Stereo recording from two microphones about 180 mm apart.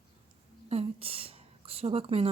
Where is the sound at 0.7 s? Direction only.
35° right (ahead or behind).